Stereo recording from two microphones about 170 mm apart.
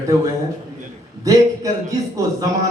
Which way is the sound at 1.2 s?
20° right (ahead or behind).